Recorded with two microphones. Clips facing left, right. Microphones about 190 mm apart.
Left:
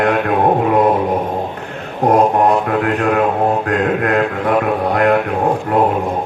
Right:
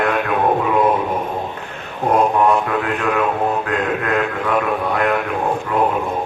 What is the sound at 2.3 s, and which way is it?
Mantra, 35° left (ahead or behind).